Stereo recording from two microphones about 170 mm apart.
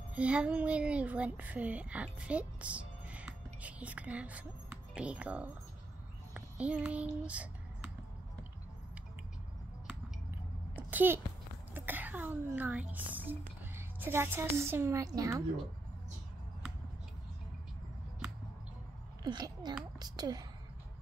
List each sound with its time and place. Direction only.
0.1 s speech: 5° right (ahead or behind)
6.3 s a sound: 5° right (ahead or behind)
10.8 s a child's voice: 10° right (ahead or behind)
19.2 s speech: 25° right (ahead or behind)